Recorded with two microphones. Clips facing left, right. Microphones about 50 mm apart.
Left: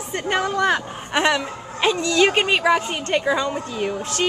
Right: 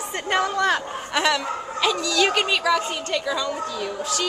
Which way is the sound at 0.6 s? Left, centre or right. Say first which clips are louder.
Left 1 dB; left.